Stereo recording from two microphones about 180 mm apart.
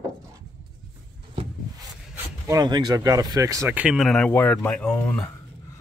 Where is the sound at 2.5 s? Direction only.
20° right (ahead or behind); by 5.2 s 10° left (ahead or behind).